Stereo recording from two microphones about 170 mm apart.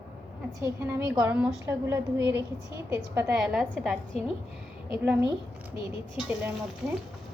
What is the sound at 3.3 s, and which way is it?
Speech, centre (ahead or behind).